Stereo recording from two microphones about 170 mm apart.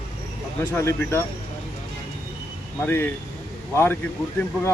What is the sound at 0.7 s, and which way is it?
Speech, 15° left (ahead or behind).